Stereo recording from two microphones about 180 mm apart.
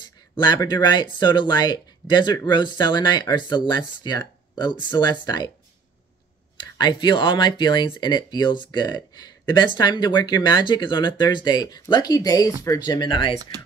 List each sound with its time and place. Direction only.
0.0 s speech: 25° left (ahead or behind)
6.6 s speech: 25° left (ahead or behind)